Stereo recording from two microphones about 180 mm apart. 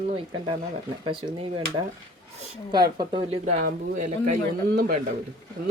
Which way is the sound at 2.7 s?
20° right (ahead or behind).